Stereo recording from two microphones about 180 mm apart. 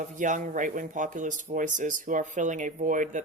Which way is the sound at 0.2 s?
45° right (ahead or behind).